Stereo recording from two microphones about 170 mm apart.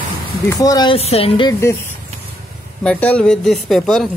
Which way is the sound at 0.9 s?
35° left (ahead or behind).